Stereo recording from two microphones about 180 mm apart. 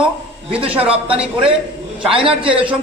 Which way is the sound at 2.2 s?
30° right (ahead or behind).